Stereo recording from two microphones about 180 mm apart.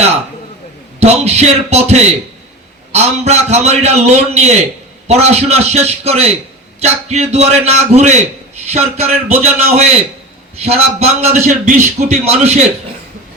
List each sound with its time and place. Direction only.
0.9 s a man's voice: 35° right (ahead or behind)